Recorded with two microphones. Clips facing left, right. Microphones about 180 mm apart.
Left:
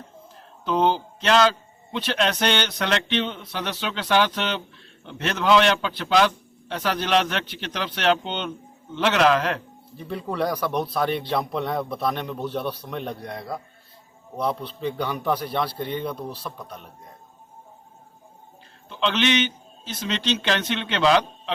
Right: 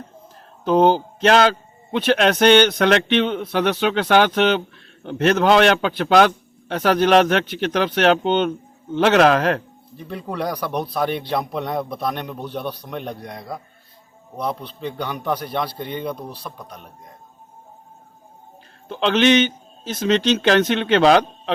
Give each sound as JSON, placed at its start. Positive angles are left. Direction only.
{"t": 0.6, "sound": "a man's voice", "side_deg": -45}
{"t": 10.0, "sound": "speech", "side_deg": 0}
{"t": 18.9, "sound": "a man's voice", "side_deg": -45}